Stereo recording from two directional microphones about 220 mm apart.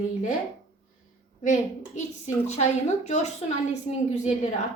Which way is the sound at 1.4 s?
35° left (ahead or behind).